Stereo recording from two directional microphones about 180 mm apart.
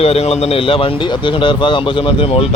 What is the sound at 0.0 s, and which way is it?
A man's voice, 35° left (ahead or behind).